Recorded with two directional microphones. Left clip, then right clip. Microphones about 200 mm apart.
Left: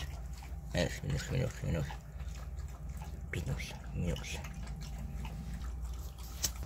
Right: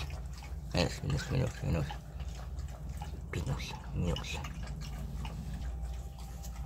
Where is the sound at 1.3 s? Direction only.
15° right (ahead or behind).